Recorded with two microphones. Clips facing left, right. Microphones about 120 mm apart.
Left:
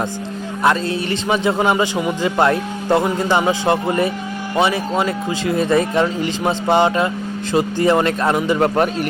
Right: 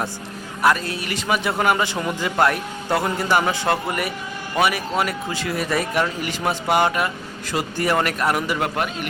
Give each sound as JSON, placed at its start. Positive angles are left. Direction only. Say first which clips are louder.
{"t": 0.6, "sound": "speech", "louder": "left 2 dB", "side_deg": 25}
{"t": 8.6, "sound": "a man's voice", "louder": "left 8 dB", "side_deg": 35}